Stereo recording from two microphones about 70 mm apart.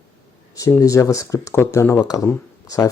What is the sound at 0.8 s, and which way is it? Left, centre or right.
Speech, left.